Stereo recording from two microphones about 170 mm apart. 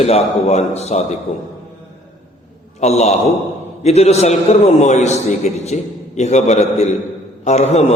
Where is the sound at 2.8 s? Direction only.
40° left (ahead or behind).